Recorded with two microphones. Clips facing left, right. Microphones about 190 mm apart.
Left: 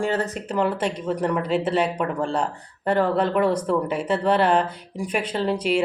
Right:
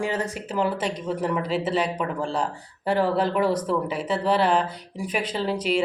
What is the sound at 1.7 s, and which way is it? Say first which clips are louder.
Speech: left 2 dB; 50° left (ahead or behind).